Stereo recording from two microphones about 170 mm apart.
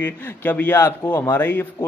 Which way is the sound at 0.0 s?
10° left (ahead or behind).